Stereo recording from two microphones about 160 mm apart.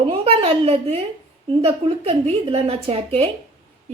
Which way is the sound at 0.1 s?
35° right (ahead or behind).